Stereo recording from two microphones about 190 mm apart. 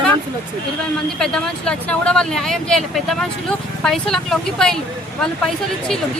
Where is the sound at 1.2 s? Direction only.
5° left (ahead or behind).